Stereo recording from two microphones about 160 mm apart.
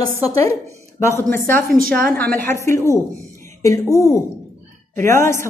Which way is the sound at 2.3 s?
15° left (ahead or behind).